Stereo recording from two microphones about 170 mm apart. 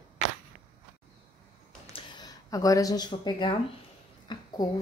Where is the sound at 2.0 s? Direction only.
25° left (ahead or behind).